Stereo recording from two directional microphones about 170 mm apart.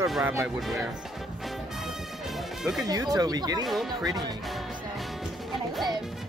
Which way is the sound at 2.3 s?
5° right (ahead or behind).